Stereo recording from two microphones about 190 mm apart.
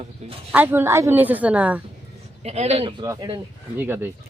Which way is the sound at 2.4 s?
35° right (ahead or behind).